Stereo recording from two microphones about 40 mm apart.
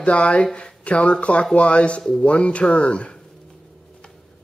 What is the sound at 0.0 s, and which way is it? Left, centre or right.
Speech, left.